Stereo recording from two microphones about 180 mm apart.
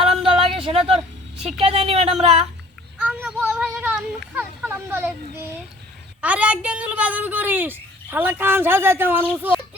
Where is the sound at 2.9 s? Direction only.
10° right (ahead or behind).